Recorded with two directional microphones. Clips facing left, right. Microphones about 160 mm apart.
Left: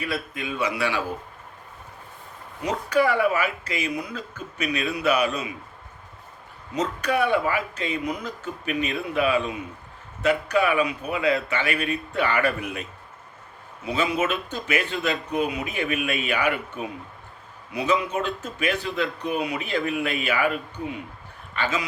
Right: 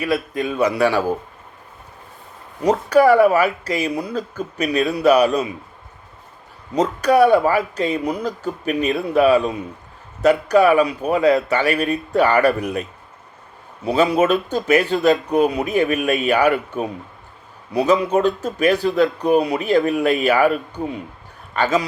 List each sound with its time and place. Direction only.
0.3 s speech: 40° right (ahead or behind)
2.6 s speech: 40° right (ahead or behind)
6.7 s speech: 40° right (ahead or behind)
13.8 s a man's voice: 35° right (ahead or behind)